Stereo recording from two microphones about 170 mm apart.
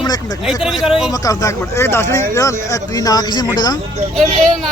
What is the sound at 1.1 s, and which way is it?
Speech, 20° left (ahead or behind).